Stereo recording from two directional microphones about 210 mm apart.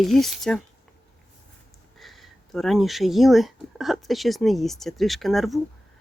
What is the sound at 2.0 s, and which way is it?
Speech, centre (ahead or behind).